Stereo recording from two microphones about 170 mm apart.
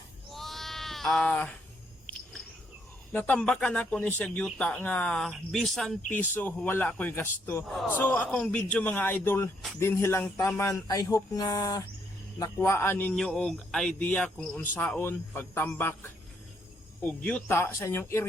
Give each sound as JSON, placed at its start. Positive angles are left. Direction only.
{"t": 0.3, "sound": "cat", "side_deg": 0}
{"t": 3.1, "sound": "speech", "side_deg": 10}
{"t": 6.1, "sound": "speech", "side_deg": 10}
{"t": 7.7, "sound": "a man's voice", "side_deg": 0}
{"t": 7.9, "sound": "speech", "side_deg": 10}
{"t": 17.0, "sound": "speech", "side_deg": 10}